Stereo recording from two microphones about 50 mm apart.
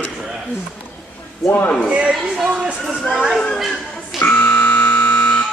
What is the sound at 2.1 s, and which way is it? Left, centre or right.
Speech, centre.